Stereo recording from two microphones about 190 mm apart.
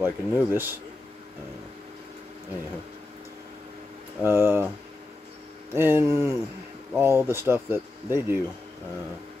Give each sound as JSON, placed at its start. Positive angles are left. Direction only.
{"t": 0.0, "sound": "speech", "side_deg": -10}
{"t": 4.2, "sound": "speech", "side_deg": -10}
{"t": 5.7, "sound": "speech", "side_deg": -15}